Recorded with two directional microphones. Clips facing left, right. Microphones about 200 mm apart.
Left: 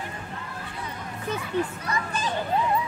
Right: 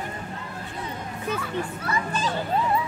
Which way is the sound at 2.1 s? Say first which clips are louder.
Right 2 dB; 15° left (ahead or behind).